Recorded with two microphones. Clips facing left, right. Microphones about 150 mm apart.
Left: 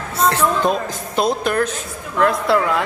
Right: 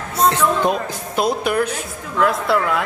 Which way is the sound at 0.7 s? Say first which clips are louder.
Left 1 dB; 5° right (ahead or behind).